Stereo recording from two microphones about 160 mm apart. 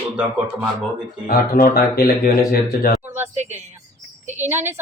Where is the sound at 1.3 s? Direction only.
70° left (ahead or behind).